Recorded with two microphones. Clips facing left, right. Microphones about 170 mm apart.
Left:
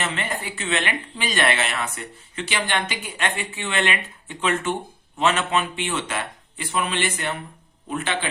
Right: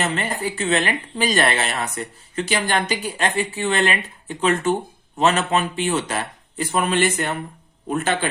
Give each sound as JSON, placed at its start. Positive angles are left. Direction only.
{"t": 0.0, "sound": "a man's voice", "side_deg": -40}